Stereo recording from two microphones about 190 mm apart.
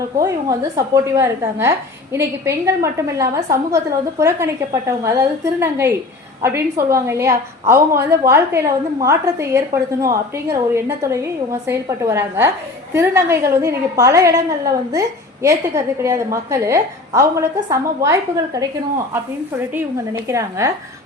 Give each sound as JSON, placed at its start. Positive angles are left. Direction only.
{"t": 0.8, "sound": "a woman's voice", "side_deg": -15}
{"t": 20.2, "sound": "a woman's voice", "side_deg": -15}